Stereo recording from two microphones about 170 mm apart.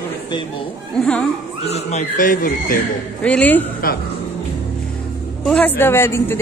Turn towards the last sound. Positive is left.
turn(degrees=15)  # may be behind; listen again after turning